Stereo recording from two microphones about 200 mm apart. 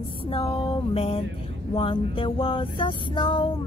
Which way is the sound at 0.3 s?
30° left (ahead or behind).